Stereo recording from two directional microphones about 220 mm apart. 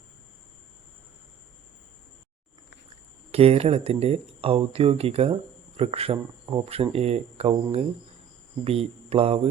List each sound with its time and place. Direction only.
3.3 s speech: 30° right (ahead or behind)